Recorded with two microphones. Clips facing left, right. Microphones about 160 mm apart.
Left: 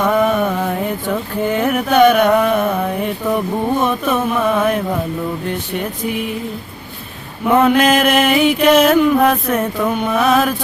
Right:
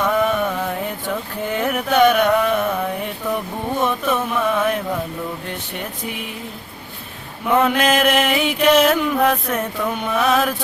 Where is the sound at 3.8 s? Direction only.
50° left (ahead or behind).